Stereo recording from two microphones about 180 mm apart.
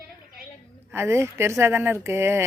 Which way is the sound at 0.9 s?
15° right (ahead or behind).